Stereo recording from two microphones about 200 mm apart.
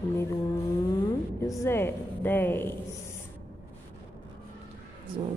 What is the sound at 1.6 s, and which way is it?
A woman's voice, 10° left (ahead or behind).